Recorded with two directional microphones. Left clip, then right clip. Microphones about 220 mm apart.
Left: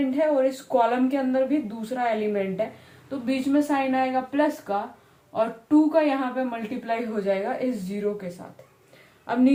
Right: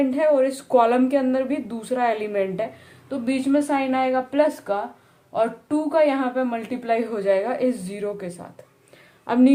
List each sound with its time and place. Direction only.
0.1 s a woman's voice: 50° right (ahead or behind)
9.2 s a woman's voice: 50° right (ahead or behind)